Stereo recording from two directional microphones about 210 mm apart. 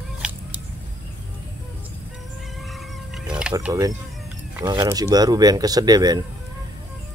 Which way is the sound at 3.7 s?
15° right (ahead or behind).